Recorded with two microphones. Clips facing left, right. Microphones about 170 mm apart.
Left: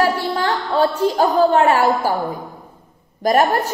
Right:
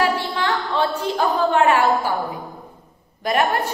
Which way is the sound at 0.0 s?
40° left (ahead or behind).